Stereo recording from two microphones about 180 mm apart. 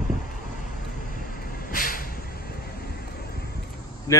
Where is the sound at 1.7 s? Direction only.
50° left (ahead or behind).